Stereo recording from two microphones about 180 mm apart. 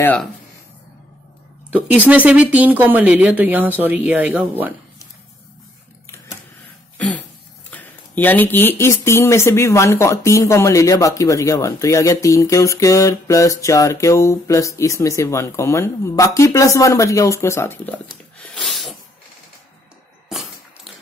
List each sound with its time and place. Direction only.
0.0 s speech: 10° left (ahead or behind)
1.7 s speech: 10° right (ahead or behind)
6.0 s printer: 15° left (ahead or behind)
7.0 s a sound: 10° left (ahead or behind)
7.7 s speech: 10° left (ahead or behind)
18.4 s a sound: centre (ahead or behind)